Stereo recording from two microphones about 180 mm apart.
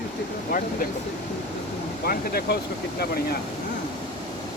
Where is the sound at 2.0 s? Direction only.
60° left (ahead or behind).